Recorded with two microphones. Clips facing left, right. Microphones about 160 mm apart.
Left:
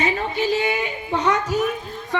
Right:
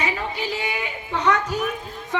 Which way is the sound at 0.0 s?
25° left (ahead or behind).